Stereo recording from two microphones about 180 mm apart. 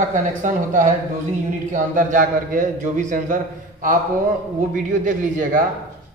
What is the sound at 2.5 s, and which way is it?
Speech, 45° right (ahead or behind).